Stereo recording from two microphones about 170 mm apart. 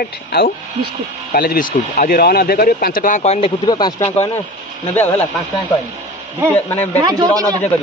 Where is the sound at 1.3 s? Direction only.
55° left (ahead or behind); by 3.5 s 40° left (ahead or behind).